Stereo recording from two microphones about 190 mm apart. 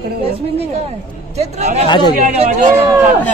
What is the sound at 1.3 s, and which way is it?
A man's voice, 35° right (ahead or behind).